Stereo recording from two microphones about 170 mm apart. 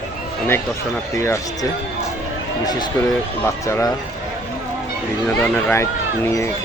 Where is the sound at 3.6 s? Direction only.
20° left (ahead or behind).